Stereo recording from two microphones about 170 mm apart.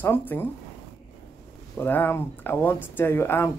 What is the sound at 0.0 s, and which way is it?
Speech, 10° left (ahead or behind).